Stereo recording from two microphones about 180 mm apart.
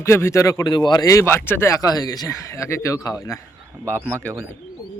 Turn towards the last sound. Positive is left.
turn(degrees=5)  # may be behind; listen again after turning